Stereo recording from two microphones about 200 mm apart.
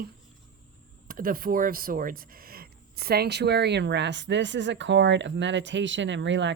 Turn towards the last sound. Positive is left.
turn(degrees=-65)  # may be behind; listen again after turning